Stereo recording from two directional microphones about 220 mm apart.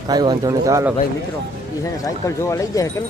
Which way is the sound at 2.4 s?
15° left (ahead or behind).